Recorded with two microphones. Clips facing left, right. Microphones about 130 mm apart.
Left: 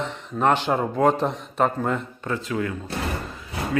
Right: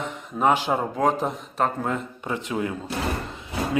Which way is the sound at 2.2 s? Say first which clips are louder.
Even; 20° right (ahead or behind).